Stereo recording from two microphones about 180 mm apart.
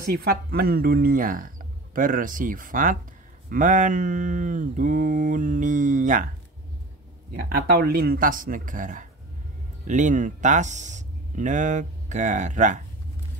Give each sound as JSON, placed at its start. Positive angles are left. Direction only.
{"t": 0.0, "sound": "speech", "side_deg": -55}
{"t": 2.0, "sound": "mantra", "side_deg": -50}
{"t": 7.8, "sound": "mantra", "side_deg": -60}